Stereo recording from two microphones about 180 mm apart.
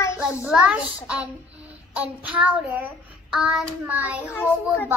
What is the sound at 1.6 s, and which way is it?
Child singing, 10° right (ahead or behind).